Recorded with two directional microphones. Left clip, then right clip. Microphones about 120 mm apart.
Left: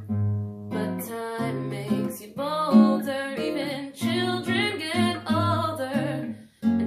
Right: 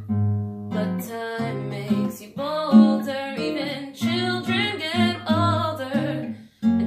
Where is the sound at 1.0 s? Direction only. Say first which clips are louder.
Right 2 dB; 20° left (ahead or behind).